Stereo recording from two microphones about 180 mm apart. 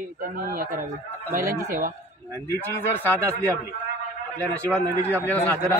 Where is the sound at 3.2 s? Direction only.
15° right (ahead or behind).